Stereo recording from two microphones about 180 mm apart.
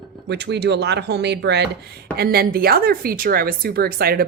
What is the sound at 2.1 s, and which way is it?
A woman's voice, 60° right (ahead or behind).